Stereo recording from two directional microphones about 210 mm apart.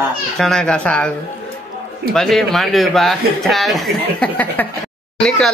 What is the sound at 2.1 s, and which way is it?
Speech, centre (ahead or behind).